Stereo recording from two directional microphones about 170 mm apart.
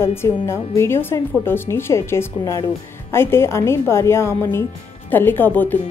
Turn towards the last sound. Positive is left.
turn(degrees=10)  # may be behind; listen again after turning